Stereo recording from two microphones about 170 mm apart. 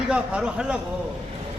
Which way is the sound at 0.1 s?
5° right (ahead or behind).